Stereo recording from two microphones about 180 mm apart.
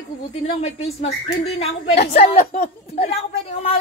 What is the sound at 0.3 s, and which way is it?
Speech, 35° left (ahead or behind).